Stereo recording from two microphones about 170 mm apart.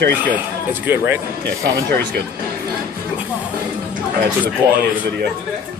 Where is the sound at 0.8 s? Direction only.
10° right (ahead or behind).